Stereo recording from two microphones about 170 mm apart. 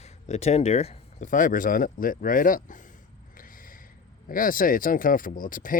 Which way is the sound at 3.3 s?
55° left (ahead or behind).